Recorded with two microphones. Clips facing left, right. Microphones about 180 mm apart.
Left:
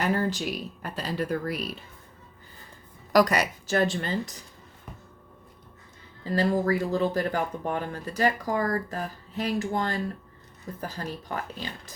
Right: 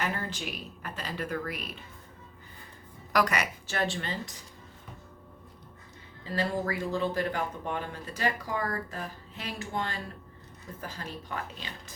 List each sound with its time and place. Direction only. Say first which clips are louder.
0.0 s speech: left 7 dB; 40° left (ahead or behind)
3.1 s speech: left 6 dB; 35° left (ahead or behind)
6.3 s speech: left 6 dB; 40° left (ahead or behind)